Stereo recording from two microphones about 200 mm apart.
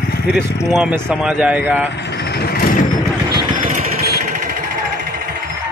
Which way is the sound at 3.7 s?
45° right (ahead or behind).